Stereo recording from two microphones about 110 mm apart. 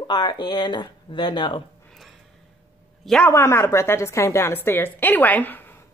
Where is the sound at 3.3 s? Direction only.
25° left (ahead or behind).